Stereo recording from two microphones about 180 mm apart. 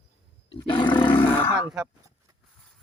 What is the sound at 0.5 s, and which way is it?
Roar, 25° left (ahead or behind).